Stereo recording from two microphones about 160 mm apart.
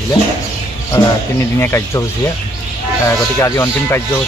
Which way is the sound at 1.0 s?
25° left (ahead or behind).